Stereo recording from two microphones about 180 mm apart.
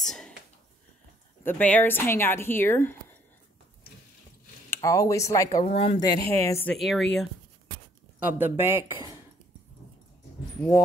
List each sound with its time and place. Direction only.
0.0 s whispering: centre (ahead or behind)
1.4 s speech: 10° left (ahead or behind)
4.6 s speech: 15° left (ahead or behind)
5.6 s speech: 35° left (ahead or behind)
5.9 s speech: 15° left (ahead or behind)
6.7 s a woman's voice: centre (ahead or behind)
8.2 s speech: 10° right (ahead or behind)